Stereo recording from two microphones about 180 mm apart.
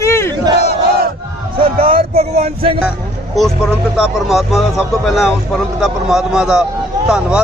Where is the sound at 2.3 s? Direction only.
35° right (ahead or behind).